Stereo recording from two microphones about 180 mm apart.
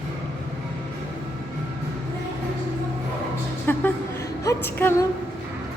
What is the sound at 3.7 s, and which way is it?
Music, 10° left (ahead or behind).